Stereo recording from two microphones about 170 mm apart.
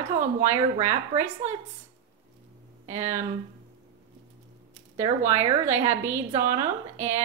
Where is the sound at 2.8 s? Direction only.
40° right (ahead or behind).